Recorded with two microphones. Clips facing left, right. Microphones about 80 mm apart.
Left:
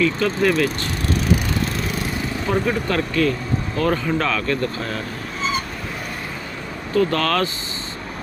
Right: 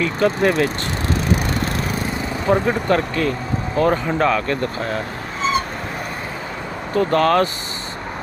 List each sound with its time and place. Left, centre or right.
0.0 s speech: right
2.5 s speech: right
6.9 s speech: right